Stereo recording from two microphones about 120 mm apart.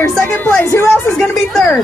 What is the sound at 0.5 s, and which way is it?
Speech, 15° left (ahead or behind).